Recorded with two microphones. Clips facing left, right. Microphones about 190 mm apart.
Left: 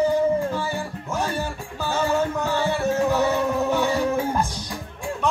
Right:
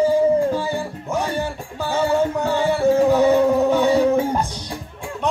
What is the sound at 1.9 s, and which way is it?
Music, 15° right (ahead or behind).